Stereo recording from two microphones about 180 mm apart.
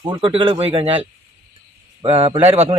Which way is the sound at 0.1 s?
30° right (ahead or behind).